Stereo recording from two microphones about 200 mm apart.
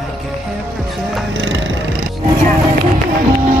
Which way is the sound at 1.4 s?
65° right (ahead or behind).